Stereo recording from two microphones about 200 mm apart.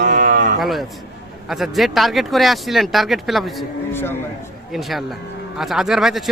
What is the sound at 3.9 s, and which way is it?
Speech, 10° left (ahead or behind).